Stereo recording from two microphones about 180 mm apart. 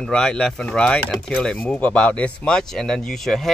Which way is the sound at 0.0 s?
5° left (ahead or behind).